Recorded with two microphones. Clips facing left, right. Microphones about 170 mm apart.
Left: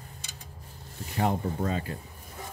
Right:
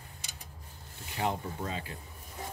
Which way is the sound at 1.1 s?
45° left (ahead or behind).